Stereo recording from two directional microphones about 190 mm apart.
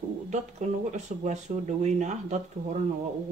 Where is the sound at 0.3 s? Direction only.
35° right (ahead or behind).